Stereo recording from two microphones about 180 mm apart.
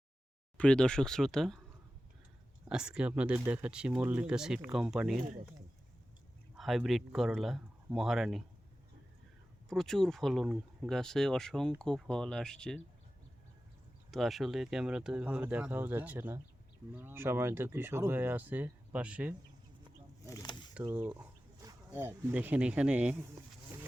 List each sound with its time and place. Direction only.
0.5 s speech: 5° left (ahead or behind)
2.6 s speech: 5° right (ahead or behind)
6.6 s speech: centre (ahead or behind)
9.6 s speech: centre (ahead or behind)
14.1 s speech: centre (ahead or behind)
20.2 s a sound: 20° left (ahead or behind)
20.8 s speech: 15° right (ahead or behind)